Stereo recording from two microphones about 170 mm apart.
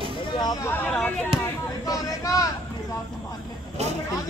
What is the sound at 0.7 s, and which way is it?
Speech, 10° left (ahead or behind).